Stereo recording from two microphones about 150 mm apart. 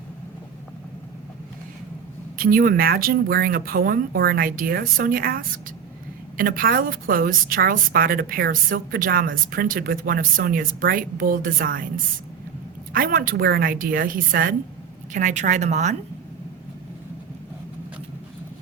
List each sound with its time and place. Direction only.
2.4 s a woman's voice: 75° right (ahead or behind)
12.9 s a woman's voice: 70° right (ahead or behind)
15.1 s speech: 55° right (ahead or behind)